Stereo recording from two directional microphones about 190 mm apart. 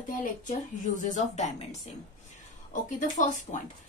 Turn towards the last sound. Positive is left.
turn(degrees=40)  # may be behind; listen again after turning